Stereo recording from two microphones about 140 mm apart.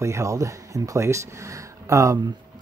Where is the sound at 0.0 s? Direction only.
20° right (ahead or behind).